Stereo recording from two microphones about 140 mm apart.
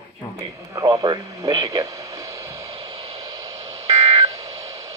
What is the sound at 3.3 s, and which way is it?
Radio, 25° right (ahead or behind).